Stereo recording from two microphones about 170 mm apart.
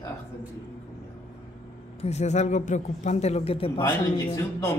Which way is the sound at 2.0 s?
40° left (ahead or behind).